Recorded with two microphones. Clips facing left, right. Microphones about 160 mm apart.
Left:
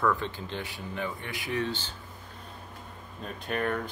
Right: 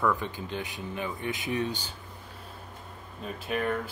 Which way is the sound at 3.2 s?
5° right (ahead or behind).